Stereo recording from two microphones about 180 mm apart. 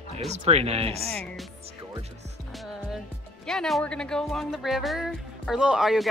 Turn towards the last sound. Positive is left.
turn(degrees=0)  # may be behind; listen again after turning